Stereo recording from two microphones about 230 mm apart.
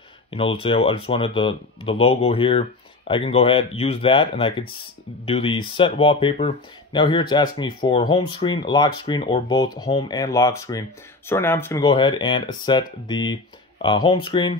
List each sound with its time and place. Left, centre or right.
0.3 s speech: left